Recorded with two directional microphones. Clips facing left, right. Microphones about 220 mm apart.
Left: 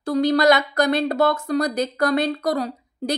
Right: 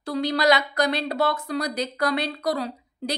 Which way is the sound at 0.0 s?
45° left (ahead or behind).